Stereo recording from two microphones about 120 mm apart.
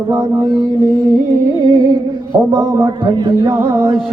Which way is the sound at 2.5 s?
30° right (ahead or behind).